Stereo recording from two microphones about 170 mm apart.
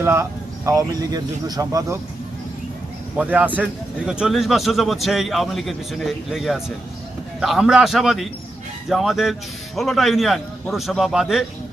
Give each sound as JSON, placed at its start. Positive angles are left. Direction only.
{"t": 0.0, "sound": "speech", "side_deg": -15}
{"t": 3.2, "sound": "a man's voice", "side_deg": -10}